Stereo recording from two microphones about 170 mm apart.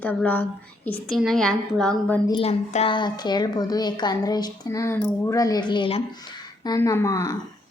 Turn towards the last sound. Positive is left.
turn(degrees=20)  # may be behind; listen again after turning